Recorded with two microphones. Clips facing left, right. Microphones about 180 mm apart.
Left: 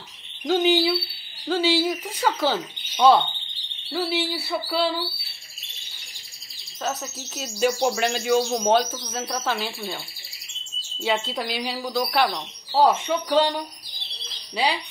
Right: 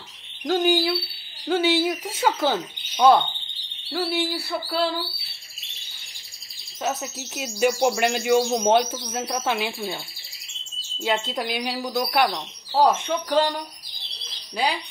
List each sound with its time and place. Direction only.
0.4 s speech: 5° left (ahead or behind)
1.5 s speech: 5° right (ahead or behind)
6.8 s speech: 10° right (ahead or behind)
11.0 s speech: 15° right (ahead or behind); by 13.5 s 5° left (ahead or behind)
14.5 s speech: 5° left (ahead or behind)